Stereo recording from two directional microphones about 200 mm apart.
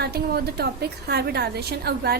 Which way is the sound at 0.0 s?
50° right (ahead or behind).